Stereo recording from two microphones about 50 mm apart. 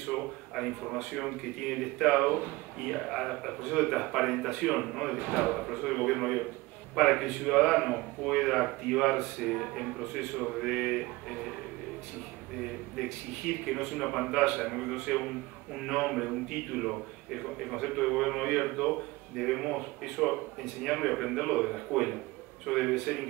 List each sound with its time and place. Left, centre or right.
0.1 s a man's voice: centre
13.5 s a man's voice: centre